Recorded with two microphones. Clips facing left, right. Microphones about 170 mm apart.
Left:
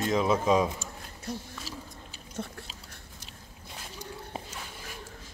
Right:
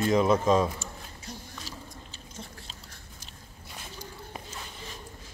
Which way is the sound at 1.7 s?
5° left (ahead or behind).